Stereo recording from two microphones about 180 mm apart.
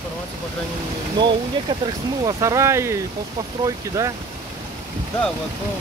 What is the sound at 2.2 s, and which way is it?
Speech, 15° right (ahead or behind).